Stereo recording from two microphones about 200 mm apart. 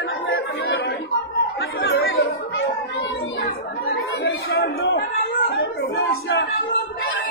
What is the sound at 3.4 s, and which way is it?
Chatter, 55° left (ahead or behind).